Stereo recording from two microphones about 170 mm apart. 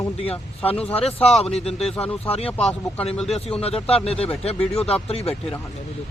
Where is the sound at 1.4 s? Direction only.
35° left (ahead or behind).